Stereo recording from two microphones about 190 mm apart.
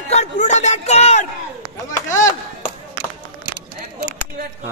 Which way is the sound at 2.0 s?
15° left (ahead or behind).